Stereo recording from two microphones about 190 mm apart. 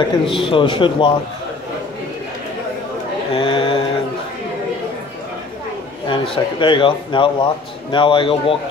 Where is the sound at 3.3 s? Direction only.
25° left (ahead or behind).